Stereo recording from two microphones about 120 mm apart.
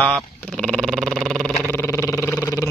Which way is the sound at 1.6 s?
20° left (ahead or behind).